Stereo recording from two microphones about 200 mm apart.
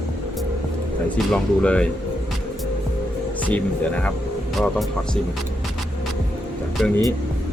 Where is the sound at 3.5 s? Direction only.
5° left (ahead or behind).